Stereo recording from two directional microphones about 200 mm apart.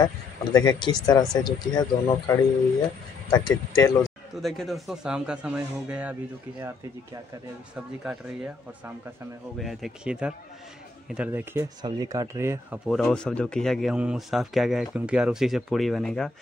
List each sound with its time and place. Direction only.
0.0 s speech: 20° left (ahead or behind)
4.4 s speech: centre (ahead or behind)
7.7 s speech: 5° right (ahead or behind)
11.8 s speech: 15° right (ahead or behind)
12.8 s speech: centre (ahead or behind)